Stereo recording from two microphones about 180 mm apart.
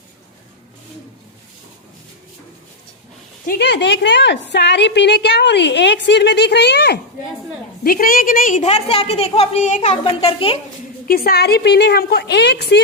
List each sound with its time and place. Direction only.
3.4 s a woman's voice: 60° left (ahead or behind)
7.9 s a woman's voice: 55° left (ahead or behind); by 10.6 s 35° left (ahead or behind)
11.1 s a woman's voice: 60° left (ahead or behind)